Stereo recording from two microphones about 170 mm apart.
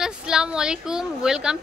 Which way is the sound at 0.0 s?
5° right (ahead or behind).